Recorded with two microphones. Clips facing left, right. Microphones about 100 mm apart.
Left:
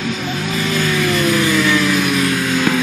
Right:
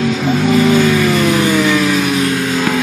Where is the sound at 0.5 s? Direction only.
40° right (ahead or behind).